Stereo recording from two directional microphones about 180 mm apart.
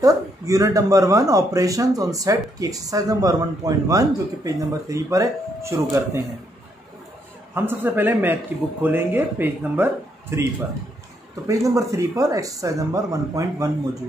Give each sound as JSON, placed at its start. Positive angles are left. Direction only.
{"t": 0.0, "sound": "speech", "side_deg": -20}
{"t": 7.5, "sound": "speech", "side_deg": -10}